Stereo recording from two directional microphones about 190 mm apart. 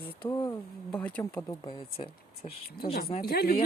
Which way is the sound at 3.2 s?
55° left (ahead or behind).